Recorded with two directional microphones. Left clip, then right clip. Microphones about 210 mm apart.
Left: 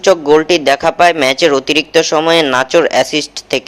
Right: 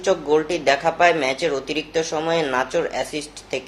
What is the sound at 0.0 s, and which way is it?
Speech, 40° left (ahead or behind).